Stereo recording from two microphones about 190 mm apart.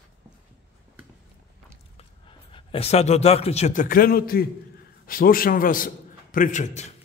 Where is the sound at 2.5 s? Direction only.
30° left (ahead or behind).